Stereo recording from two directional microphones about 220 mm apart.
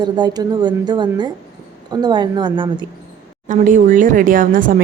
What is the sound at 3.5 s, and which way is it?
Speech, 35° right (ahead or behind).